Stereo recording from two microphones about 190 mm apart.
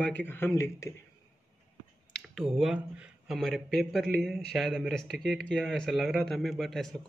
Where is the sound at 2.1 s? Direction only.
Centre (ahead or behind).